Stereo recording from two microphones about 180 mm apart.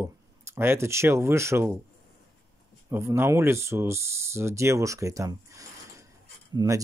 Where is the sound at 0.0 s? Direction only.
15° right (ahead or behind).